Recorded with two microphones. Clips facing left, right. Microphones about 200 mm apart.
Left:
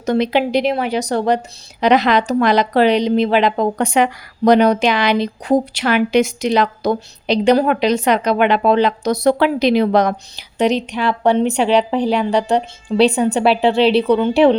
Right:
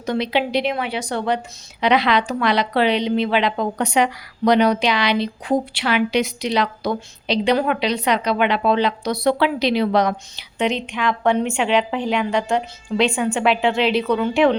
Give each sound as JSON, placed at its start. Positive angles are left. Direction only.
{"t": 0.0, "sound": "a woman's voice", "side_deg": 45}